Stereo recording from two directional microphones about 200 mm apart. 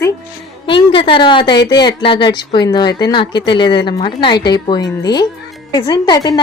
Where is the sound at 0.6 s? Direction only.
25° left (ahead or behind).